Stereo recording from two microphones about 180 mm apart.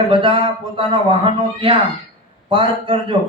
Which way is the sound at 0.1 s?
30° right (ahead or behind).